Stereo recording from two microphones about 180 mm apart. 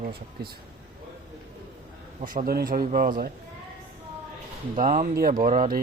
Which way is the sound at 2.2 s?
50° right (ahead or behind).